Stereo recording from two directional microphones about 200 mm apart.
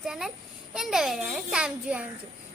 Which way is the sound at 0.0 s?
Centre (ahead or behind).